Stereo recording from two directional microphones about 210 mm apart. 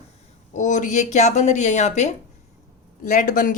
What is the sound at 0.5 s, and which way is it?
A woman's voice, 35° left (ahead or behind).